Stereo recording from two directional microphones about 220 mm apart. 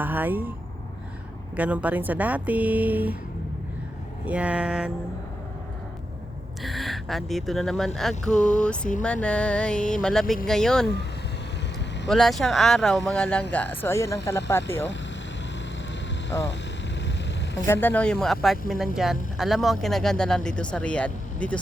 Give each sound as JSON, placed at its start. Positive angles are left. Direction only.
{"t": 0.0, "sound": "speech", "side_deg": -10}
{"t": 1.5, "sound": "speech", "side_deg": -5}
{"t": 4.3, "sound": "speech", "side_deg": -5}
{"t": 6.6, "sound": "speech", "side_deg": 0}
{"t": 8.3, "sound": "a sound", "side_deg": 35}
{"t": 8.6, "sound": "speech", "side_deg": 5}
{"t": 12.0, "sound": "speech", "side_deg": 0}
{"t": 16.3, "sound": "speech", "side_deg": 15}
{"t": 17.0, "sound": "vehicle", "side_deg": 55}
{"t": 17.7, "sound": "speech", "side_deg": 10}